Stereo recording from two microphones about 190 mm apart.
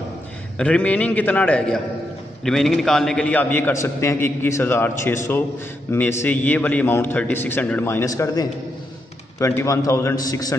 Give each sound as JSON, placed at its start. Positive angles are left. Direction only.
{"t": 0.6, "sound": "a man's voice", "side_deg": 5}